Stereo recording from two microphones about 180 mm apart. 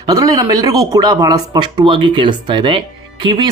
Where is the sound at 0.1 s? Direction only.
20° right (ahead or behind).